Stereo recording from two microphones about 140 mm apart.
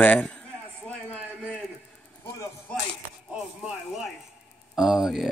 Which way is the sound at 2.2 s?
20° left (ahead or behind).